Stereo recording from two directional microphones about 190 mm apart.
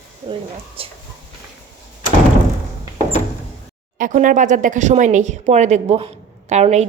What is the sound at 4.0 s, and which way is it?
Speech, 40° right (ahead or behind).